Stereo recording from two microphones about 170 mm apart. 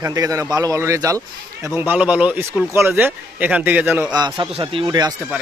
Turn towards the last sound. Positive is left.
turn(degrees=-25)  # may be behind; listen again after turning